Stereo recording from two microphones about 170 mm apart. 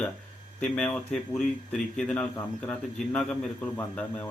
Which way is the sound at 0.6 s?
10° left (ahead or behind).